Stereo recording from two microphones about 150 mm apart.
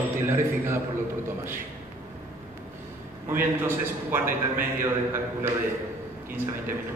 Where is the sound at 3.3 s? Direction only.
15° right (ahead or behind).